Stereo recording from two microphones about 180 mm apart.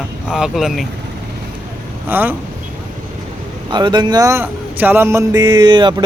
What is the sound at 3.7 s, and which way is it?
A man's voice, 25° right (ahead or behind).